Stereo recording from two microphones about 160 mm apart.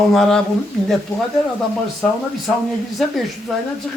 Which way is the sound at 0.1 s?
5° left (ahead or behind).